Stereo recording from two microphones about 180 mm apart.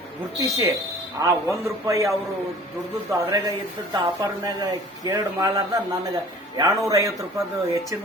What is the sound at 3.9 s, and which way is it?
A man's voice, 20° right (ahead or behind).